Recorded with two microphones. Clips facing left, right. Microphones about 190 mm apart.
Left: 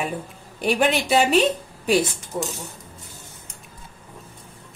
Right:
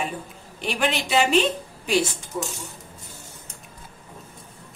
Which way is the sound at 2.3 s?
45° left (ahead or behind).